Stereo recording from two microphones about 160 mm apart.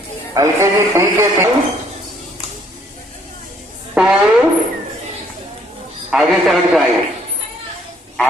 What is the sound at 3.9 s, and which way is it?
Speech, 5° right (ahead or behind).